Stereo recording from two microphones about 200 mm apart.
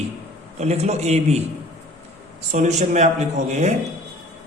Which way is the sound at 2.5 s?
35° right (ahead or behind).